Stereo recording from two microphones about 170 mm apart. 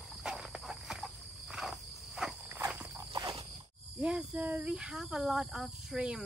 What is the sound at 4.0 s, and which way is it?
Speech, 5° right (ahead or behind).